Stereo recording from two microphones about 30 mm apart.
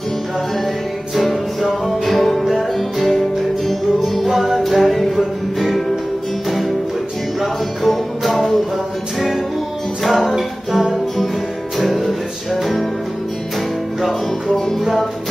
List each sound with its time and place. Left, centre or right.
1.1 s music: centre
4.2 s music: centre
7.8 s music: centre
10.0 s music: centre
11.8 s music: centre